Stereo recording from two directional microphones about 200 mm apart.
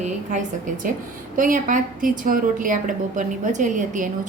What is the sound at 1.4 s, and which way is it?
A woman's voice, 40° right (ahead or behind).